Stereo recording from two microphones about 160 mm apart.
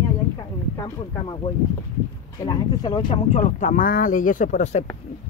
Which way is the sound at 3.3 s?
50° left (ahead or behind).